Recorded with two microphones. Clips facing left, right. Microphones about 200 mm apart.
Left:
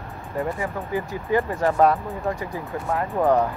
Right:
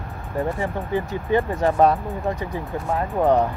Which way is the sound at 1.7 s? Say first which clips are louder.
Right 1 dB; 15° right (ahead or behind).